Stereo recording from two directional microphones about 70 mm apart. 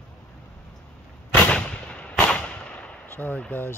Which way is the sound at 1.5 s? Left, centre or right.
Centre.